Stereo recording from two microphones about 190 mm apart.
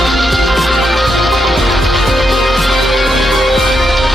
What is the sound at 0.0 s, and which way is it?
Music, centre (ahead or behind).